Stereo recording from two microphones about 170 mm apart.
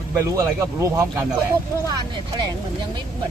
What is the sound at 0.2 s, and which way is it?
Speech, 20° right (ahead or behind).